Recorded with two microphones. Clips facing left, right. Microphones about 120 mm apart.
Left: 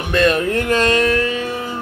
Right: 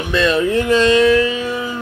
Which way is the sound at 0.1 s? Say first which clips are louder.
Left 1 dB; 50° left (ahead or behind).